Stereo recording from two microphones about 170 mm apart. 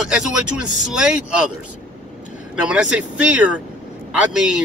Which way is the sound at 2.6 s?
5° right (ahead or behind).